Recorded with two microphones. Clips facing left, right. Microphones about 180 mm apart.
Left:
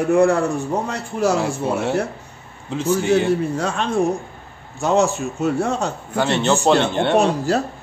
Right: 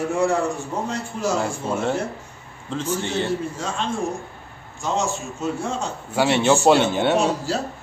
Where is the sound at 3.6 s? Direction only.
65° left (ahead or behind).